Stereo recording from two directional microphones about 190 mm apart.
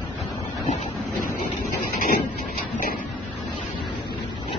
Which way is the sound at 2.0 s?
45° left (ahead or behind).